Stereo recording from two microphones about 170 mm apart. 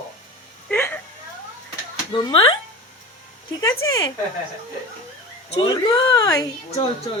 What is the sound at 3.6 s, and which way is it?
Speech, 20° left (ahead or behind).